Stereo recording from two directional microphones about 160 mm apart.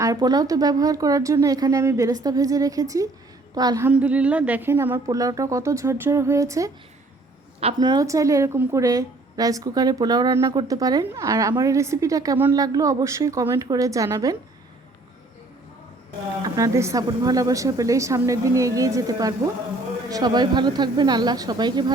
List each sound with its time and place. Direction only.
0.0 s a woman's voice: 25° right (ahead or behind)
3.8 s a woman's voice: 10° right (ahead or behind)
7.8 s a woman's voice: 25° right (ahead or behind)
16.4 s a woman's voice: 20° right (ahead or behind)